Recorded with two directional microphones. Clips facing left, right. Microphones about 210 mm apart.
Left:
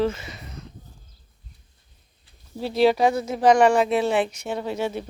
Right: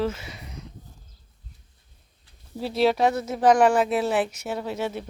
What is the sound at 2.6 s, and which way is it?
Speech, centre (ahead or behind).